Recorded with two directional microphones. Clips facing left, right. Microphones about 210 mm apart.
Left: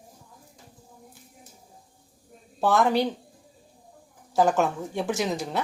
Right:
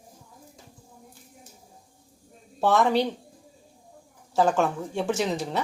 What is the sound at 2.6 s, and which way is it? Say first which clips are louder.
Speech: even; centre (ahead or behind).